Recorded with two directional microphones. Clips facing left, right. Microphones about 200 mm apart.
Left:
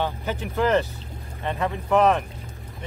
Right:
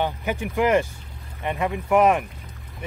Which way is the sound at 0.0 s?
15° right (ahead or behind).